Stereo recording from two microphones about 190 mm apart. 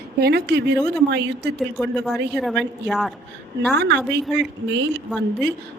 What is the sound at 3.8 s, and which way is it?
Speech, 65° right (ahead or behind).